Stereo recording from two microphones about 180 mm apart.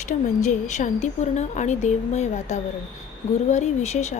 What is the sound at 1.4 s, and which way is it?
Speech, 40° left (ahead or behind).